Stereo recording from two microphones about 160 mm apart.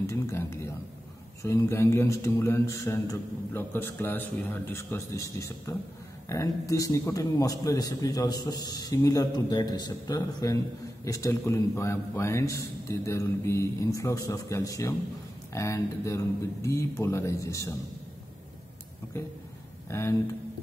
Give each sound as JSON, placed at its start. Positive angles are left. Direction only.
{"t": 0.0, "sound": "a man's voice", "side_deg": 20}
{"t": 19.1, "sound": "speech", "side_deg": 15}